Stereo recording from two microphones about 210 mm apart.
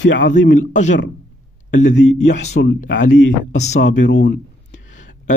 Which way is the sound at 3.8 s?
55° left (ahead or behind).